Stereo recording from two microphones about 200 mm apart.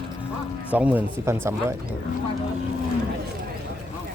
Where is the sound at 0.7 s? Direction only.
5° right (ahead or behind).